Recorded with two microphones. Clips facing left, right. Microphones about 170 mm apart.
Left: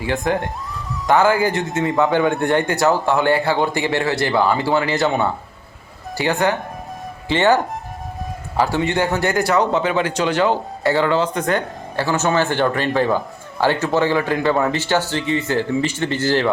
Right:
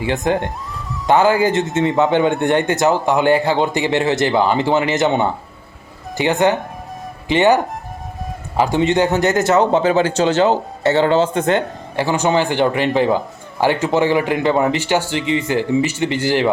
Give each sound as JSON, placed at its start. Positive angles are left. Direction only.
{"t": 0.0, "sound": "speech", "side_deg": -20}